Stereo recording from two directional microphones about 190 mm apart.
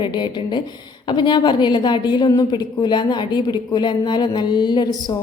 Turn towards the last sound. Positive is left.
turn(degrees=20)  # may be behind; listen again after turning